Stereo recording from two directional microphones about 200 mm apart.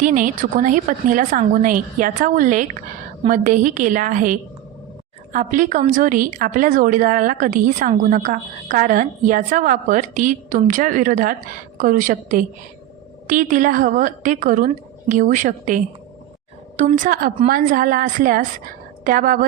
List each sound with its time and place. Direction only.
0.0 s a woman's voice: 40° right (ahead or behind)